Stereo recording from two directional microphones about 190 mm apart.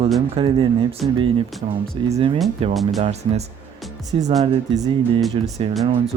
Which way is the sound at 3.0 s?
35° right (ahead or behind).